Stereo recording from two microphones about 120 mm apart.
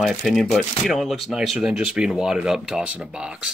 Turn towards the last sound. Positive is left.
turn(degrees=-5)  # may be behind; listen again after turning